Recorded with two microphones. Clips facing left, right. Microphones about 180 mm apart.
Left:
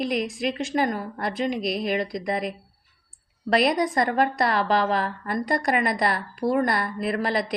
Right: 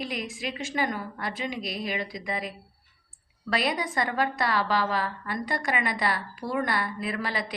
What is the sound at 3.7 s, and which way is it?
A woman's voice, 40° left (ahead or behind).